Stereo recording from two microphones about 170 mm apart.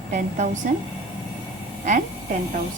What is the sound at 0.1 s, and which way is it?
Speech, 45° right (ahead or behind).